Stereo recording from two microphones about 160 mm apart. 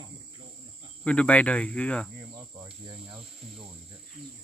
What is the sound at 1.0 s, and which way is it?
Cricket, 5° left (ahead or behind).